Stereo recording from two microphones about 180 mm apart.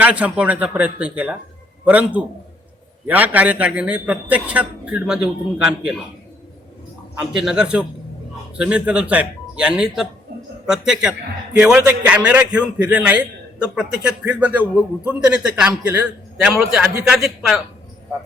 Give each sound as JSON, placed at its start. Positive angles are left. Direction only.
{"t": 0.0, "sound": "a man's voice", "side_deg": -5}
{"t": 7.2, "sound": "a man's voice", "side_deg": -5}